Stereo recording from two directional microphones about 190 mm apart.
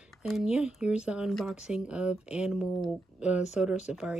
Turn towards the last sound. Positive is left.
turn(degrees=-5)  # may be behind; listen again after turning